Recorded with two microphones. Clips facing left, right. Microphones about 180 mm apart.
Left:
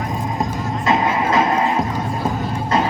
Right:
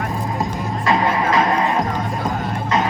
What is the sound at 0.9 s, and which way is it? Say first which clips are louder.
Music: even; 25° left (ahead or behind).